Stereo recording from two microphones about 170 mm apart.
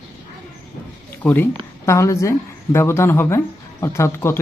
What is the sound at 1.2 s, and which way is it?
Speech, 10° left (ahead or behind).